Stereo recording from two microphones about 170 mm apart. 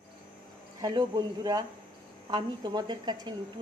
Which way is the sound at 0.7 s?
20° right (ahead or behind).